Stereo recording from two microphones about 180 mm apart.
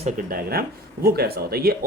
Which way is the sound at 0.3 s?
55° right (ahead or behind).